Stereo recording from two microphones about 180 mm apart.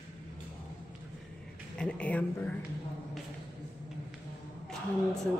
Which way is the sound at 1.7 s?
5° left (ahead or behind).